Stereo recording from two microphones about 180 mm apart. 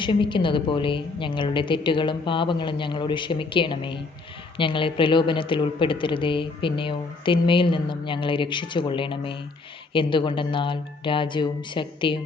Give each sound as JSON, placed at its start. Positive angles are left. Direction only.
{"t": 0.0, "sound": "a woman's voice", "side_deg": 25}